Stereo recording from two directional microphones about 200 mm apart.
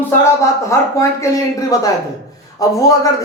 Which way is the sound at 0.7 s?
15° left (ahead or behind).